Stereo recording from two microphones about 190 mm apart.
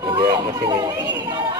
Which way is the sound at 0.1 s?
25° right (ahead or behind).